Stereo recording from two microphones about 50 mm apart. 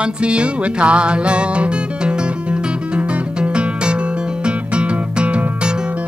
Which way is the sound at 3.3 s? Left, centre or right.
Right.